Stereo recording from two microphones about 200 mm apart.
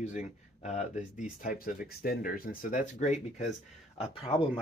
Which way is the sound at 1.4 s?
45° left (ahead or behind).